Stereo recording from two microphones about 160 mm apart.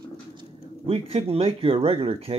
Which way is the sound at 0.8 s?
40° right (ahead or behind).